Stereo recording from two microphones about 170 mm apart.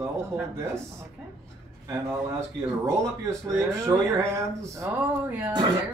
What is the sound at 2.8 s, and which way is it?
Speech, 15° right (ahead or behind).